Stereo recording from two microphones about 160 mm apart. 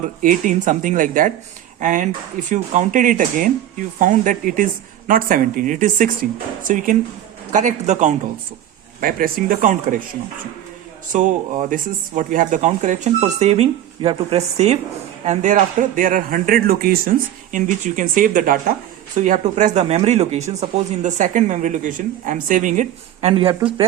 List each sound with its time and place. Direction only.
0.0 s a man's voice: 55° right (ahead or behind)
9.0 s speech: 65° right (ahead or behind)
11.1 s a man's voice: 55° right (ahead or behind)
23.3 s speech: 30° right (ahead or behind)